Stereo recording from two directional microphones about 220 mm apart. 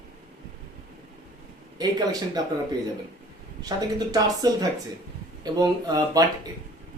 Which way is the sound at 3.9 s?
15° right (ahead or behind).